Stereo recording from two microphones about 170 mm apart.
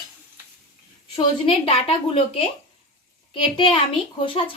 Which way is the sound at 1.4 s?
35° left (ahead or behind).